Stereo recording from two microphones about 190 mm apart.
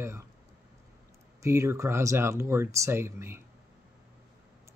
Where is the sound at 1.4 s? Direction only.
15° right (ahead or behind).